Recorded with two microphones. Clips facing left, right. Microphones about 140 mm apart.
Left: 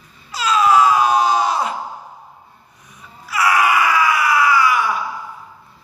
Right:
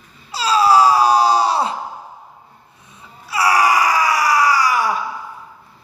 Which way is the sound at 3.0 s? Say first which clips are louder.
Even; 30° right (ahead or behind).